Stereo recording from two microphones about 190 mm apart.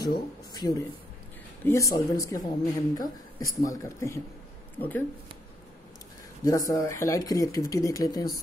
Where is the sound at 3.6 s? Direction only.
15° left (ahead or behind).